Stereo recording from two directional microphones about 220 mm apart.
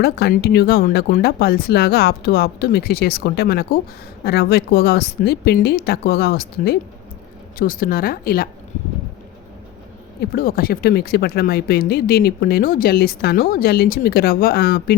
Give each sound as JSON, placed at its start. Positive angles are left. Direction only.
{"t": 0.0, "sound": "speech", "side_deg": 45}
{"t": 10.2, "sound": "speech", "side_deg": 40}